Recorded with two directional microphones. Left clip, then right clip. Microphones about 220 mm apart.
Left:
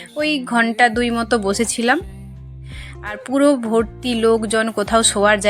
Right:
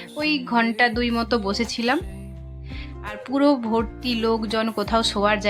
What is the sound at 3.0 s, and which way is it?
Speech, 15° left (ahead or behind).